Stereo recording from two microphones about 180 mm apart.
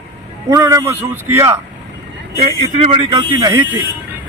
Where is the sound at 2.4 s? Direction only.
30° right (ahead or behind).